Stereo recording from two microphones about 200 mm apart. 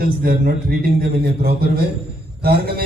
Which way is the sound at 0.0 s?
45° right (ahead or behind).